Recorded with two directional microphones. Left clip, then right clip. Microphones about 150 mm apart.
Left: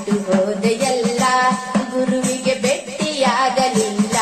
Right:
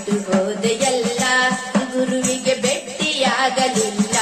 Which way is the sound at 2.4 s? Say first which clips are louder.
Left 1 dB; 10° right (ahead or behind).